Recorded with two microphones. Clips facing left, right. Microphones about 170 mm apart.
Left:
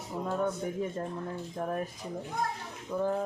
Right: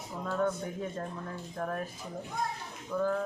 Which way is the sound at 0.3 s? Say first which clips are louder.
Right 1 dB; 15° left (ahead or behind).